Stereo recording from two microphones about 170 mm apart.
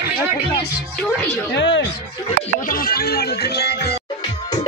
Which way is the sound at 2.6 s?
60° left (ahead or behind).